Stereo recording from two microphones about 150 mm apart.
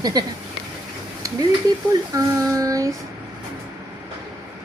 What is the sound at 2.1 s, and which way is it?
Child singing, 20° right (ahead or behind).